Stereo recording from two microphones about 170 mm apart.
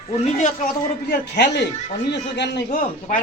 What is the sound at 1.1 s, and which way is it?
A man's voice, 80° left.